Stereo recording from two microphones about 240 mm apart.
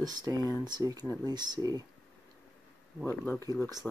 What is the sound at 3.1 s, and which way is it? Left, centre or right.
Speech, centre.